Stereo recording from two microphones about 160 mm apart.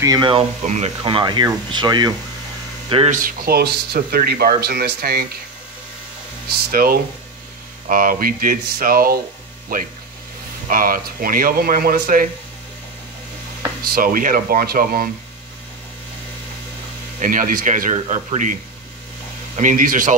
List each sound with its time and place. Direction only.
0.0 s speech: 25° right (ahead or behind)
0.7 s speech: 45° right (ahead or behind)
1.0 s speech: 30° right (ahead or behind)
3.1 s speech: 60° right (ahead or behind); by 5.2 s 75° right (ahead or behind)
6.7 s speech: 70° right (ahead or behind)
13.8 s speech: 65° right (ahead or behind)
17.2 s speech: 60° right (ahead or behind)